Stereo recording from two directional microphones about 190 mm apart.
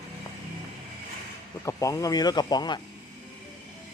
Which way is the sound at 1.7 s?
15° left (ahead or behind).